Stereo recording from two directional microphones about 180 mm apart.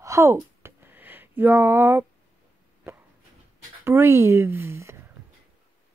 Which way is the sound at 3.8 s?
15° right (ahead or behind).